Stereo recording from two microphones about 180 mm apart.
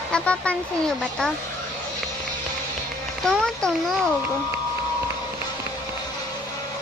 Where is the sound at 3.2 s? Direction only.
5° left (ahead or behind).